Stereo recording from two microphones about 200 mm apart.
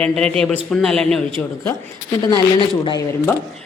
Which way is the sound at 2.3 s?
25° left (ahead or behind).